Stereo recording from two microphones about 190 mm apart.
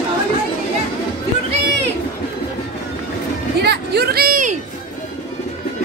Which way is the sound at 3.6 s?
60° right (ahead or behind).